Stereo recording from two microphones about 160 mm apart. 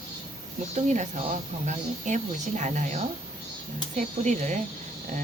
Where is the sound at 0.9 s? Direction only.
50° right (ahead or behind).